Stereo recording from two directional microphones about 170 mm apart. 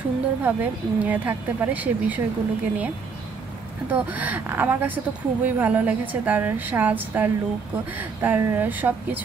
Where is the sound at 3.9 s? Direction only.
10° right (ahead or behind).